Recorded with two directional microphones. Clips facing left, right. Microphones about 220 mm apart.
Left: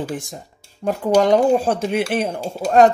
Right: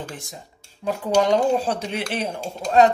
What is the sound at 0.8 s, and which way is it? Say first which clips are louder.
Speech: left 4 dB; 50° left (ahead or behind).